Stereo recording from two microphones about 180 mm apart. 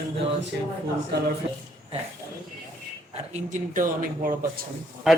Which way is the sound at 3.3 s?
45° right (ahead or behind).